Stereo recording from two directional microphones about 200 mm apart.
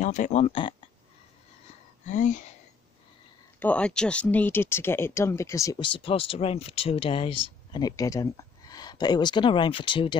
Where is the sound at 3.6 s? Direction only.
5° left (ahead or behind).